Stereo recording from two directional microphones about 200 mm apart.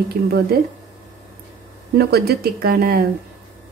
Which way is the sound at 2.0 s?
50° right (ahead or behind).